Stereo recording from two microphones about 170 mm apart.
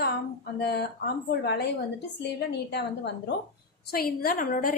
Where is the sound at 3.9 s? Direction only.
60° left (ahead or behind).